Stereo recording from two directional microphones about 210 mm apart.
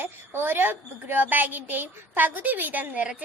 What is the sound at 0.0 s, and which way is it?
A woman's voice, 10° right (ahead or behind).